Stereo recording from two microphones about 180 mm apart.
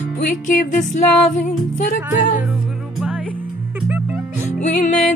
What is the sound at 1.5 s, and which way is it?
Music, 45° left (ahead or behind).